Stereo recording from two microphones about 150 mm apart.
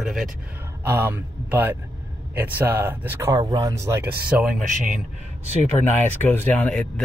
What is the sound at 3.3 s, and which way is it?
Speech, 25° right (ahead or behind).